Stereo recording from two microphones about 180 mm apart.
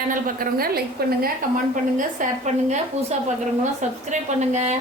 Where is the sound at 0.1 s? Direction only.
50° right (ahead or behind).